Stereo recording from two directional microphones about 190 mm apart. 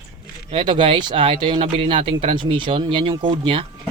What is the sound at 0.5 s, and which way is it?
Speech, 25° right (ahead or behind).